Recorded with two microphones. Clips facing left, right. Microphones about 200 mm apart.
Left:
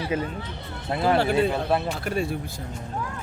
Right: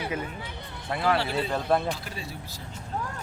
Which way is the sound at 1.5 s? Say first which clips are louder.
Left 1 dB; 5° left (ahead or behind).